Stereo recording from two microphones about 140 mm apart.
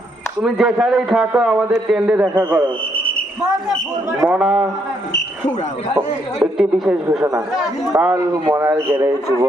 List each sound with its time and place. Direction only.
0.4 s a man's voice: centre (ahead or behind)
4.3 s a man's voice: 5° right (ahead or behind)
6.4 s a man's voice: 5° right (ahead or behind)
8.1 s a man's voice: 20° right (ahead or behind)